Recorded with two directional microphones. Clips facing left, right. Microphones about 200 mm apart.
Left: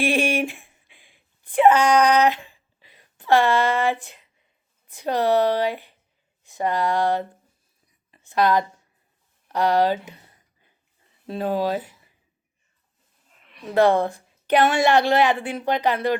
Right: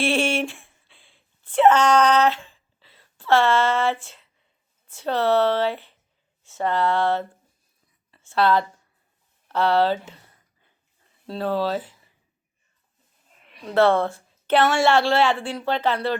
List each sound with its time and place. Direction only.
0.0 s a sound: 15° left (ahead or behind)
4.0 s a woman's voice: 15° left (ahead or behind)
11.3 s a woman's voice: 15° left (ahead or behind)
13.7 s a woman's voice: 15° left (ahead or behind)